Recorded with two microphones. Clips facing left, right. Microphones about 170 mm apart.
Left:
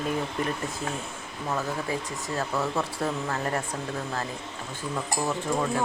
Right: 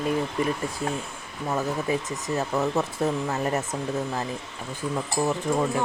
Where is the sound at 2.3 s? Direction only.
20° right (ahead or behind).